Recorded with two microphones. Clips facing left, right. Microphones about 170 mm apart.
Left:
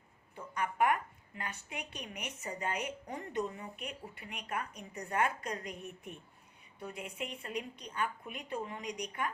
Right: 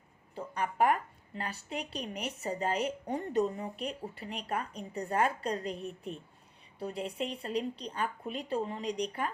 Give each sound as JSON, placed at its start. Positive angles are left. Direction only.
{"t": 0.3, "sound": "a woman's voice", "side_deg": -35}